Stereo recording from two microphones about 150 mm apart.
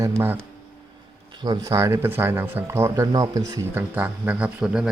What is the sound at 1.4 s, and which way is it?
Speech, 25° right (ahead or behind).